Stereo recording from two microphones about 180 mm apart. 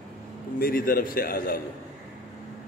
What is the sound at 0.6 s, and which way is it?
A man's voice, 50° left (ahead or behind).